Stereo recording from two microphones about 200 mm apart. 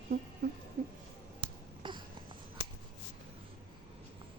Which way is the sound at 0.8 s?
40° right (ahead or behind).